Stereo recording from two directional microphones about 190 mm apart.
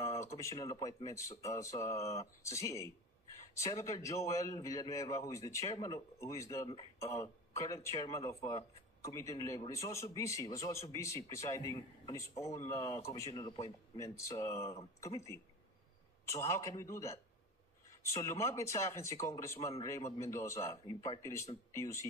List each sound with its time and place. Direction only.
0.0 s a man's voice: 15° left (ahead or behind)